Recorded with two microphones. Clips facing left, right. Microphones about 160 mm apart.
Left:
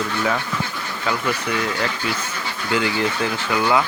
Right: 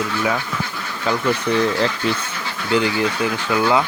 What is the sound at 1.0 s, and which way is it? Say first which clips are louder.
Speech: right 4 dB; 30° right (ahead or behind).